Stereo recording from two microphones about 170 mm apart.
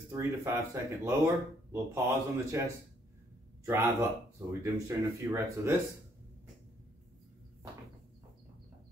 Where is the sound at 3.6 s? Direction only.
15° right (ahead or behind).